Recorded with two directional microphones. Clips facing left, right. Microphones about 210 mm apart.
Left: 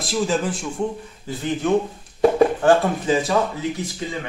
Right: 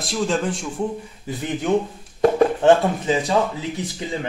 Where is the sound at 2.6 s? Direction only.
20° right (ahead or behind).